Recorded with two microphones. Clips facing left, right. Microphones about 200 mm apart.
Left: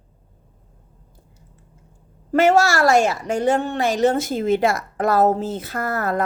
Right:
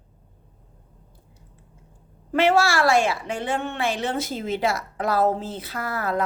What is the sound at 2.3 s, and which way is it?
A woman's voice, 45° left (ahead or behind).